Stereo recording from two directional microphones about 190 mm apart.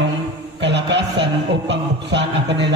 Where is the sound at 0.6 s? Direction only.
70° right (ahead or behind).